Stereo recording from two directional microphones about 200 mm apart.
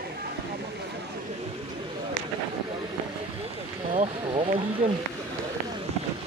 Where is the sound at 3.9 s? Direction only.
30° right (ahead or behind).